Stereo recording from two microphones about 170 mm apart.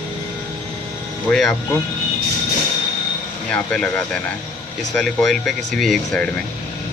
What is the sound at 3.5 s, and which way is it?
Speech, 5° left (ahead or behind).